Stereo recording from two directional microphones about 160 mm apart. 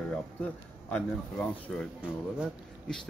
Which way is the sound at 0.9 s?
5° left (ahead or behind).